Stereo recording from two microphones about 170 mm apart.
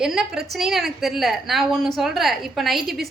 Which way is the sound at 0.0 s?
5° right (ahead or behind).